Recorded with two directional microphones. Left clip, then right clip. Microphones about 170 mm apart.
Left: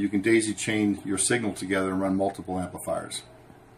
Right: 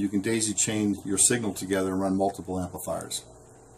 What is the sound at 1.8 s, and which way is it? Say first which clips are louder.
Speech: even; 15° right (ahead or behind).